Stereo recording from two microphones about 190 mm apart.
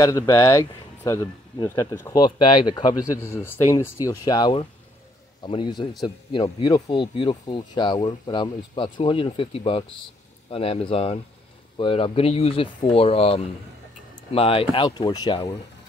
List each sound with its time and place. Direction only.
0.0 s speech: 20° left (ahead or behind)